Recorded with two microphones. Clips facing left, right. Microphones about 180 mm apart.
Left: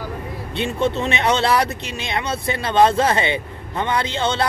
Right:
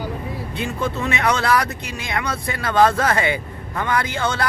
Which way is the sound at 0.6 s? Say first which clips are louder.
Left 4 dB; 25° left (ahead or behind).